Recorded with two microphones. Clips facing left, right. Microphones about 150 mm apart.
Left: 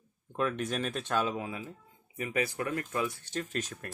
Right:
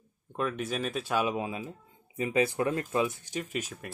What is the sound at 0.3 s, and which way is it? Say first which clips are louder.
Speech: even; centre (ahead or behind).